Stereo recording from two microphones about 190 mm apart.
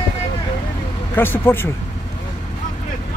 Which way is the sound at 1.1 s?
10° left (ahead or behind).